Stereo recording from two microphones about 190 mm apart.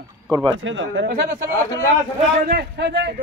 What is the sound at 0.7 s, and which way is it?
Speech, 80° right.